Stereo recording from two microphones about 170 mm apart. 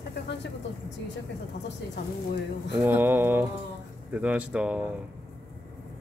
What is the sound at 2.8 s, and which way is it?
Speech, 10° right (ahead or behind).